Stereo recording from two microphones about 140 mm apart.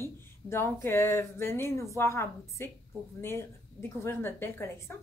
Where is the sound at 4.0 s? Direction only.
15° left (ahead or behind).